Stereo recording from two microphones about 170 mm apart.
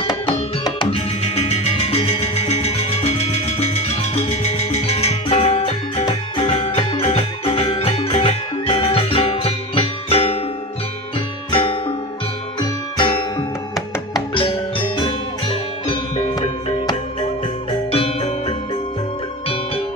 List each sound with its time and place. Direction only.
0.0 s music: 25° left (ahead or behind)
11.5 s music: 30° left (ahead or behind)
17.9 s music: 35° left (ahead or behind)